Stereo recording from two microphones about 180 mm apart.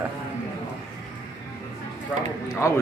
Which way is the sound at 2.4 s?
15° left (ahead or behind).